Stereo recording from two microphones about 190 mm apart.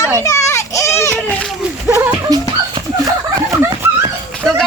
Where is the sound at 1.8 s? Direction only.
10° right (ahead or behind).